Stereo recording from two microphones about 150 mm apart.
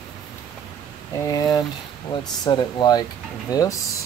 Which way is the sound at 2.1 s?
30° left (ahead or behind).